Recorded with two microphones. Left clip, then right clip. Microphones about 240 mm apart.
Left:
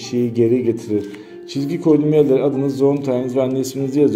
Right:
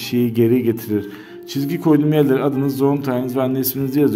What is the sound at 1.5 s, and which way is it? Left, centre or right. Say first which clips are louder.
A man's voice: left 1 dB; right.